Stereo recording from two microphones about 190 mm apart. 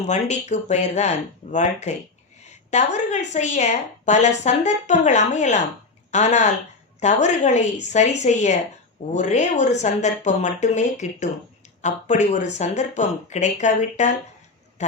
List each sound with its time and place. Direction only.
0.0 s a woman's voice: 35° left (ahead or behind)